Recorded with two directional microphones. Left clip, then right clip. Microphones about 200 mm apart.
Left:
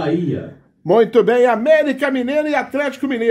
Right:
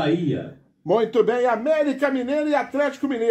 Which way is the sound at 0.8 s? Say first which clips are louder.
Left 6 dB; 50° left (ahead or behind).